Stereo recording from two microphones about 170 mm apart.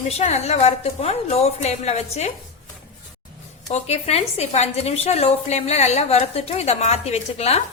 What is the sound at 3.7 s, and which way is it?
A woman's voice, 40° left (ahead or behind).